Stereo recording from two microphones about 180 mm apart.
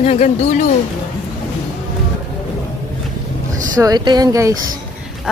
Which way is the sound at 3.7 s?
20° right (ahead or behind).